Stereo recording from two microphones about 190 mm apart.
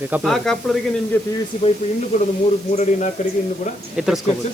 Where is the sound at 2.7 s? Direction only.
35° left (ahead or behind).